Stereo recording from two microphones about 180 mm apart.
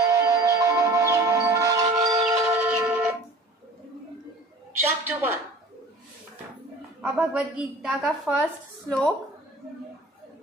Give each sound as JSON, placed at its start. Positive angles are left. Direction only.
{"t": 0.1, "sound": "music", "side_deg": -20}
{"t": 4.7, "sound": "a sound", "side_deg": -10}
{"t": 7.0, "sound": "a woman's voice", "side_deg": -5}